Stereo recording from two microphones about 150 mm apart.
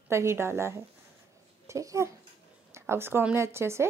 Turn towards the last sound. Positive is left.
turn(degrees=-15)  # may be behind; listen again after turning